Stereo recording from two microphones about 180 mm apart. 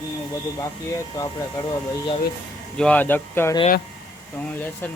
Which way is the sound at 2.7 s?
5° left (ahead or behind).